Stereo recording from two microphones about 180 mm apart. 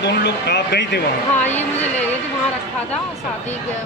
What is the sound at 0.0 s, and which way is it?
Speech, 65° left (ahead or behind).